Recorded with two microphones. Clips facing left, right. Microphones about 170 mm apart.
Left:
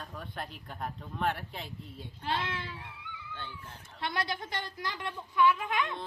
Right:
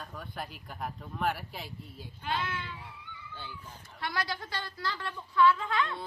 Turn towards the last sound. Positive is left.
turn(degrees=15)  # may be behind; listen again after turning